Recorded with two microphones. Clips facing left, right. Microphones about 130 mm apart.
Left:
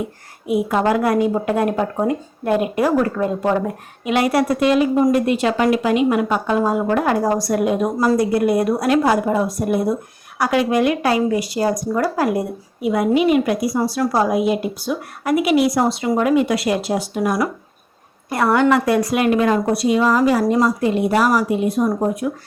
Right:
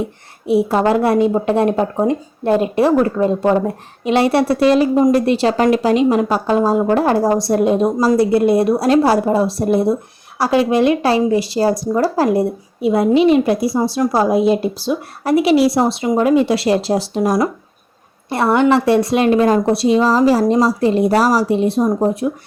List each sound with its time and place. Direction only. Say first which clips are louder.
0.0 s speech: right 3 dB; 30° right (ahead or behind)